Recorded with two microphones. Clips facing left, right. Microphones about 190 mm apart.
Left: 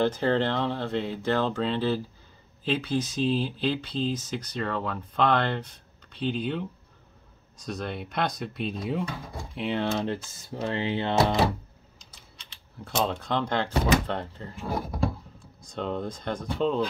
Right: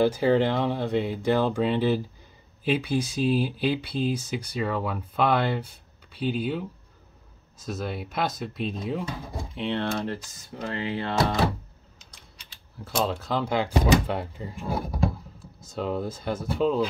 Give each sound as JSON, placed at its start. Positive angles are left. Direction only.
{"t": 0.0, "sound": "speech", "side_deg": -10}
{"t": 9.9, "sound": "speech", "side_deg": 25}
{"t": 12.0, "sound": "typing", "side_deg": 0}
{"t": 12.8, "sound": "speech", "side_deg": -5}